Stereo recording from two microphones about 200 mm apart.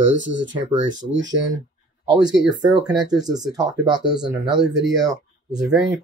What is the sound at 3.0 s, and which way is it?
Speech, 20° right (ahead or behind).